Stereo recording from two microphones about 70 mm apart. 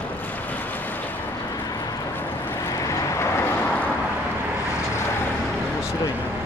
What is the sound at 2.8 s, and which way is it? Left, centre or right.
Vehicle, left.